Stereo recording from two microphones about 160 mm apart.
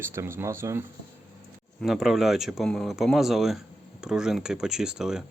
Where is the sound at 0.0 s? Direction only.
15° right (ahead or behind).